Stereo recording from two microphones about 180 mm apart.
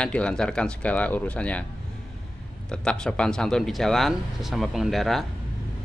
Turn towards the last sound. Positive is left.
turn(degrees=0)  # may be behind; listen again after turning